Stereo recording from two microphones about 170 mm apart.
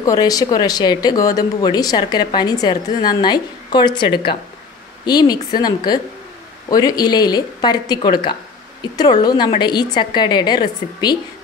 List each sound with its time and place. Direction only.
0.0 s speech: 20° left (ahead or behind)